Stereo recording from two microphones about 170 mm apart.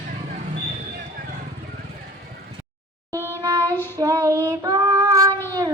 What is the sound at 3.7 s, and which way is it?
Child singing, 10° left (ahead or behind).